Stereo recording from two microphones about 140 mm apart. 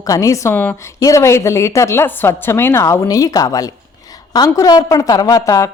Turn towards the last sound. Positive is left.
turn(degrees=25)  # may be behind; listen again after turning